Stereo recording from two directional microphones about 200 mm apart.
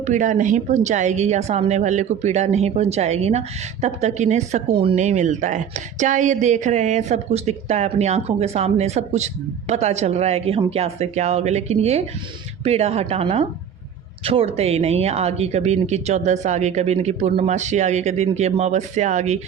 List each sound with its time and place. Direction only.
0.0 s a woman's voice: 40° right (ahead or behind)